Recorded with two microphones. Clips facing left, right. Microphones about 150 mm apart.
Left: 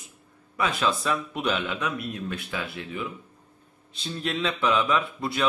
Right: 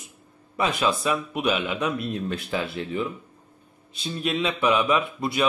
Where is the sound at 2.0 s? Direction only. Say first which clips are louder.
Right 4 dB; 30° right (ahead or behind).